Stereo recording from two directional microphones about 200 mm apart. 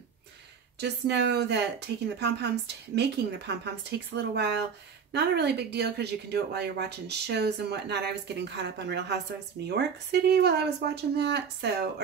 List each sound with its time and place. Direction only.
0.7 s speech: 55° right (ahead or behind)